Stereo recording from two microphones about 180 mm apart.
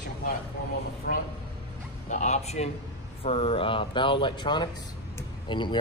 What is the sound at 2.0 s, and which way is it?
Speech, 40° left (ahead or behind).